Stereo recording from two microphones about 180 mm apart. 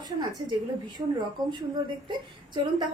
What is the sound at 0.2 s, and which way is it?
A woman's voice, 25° right (ahead or behind).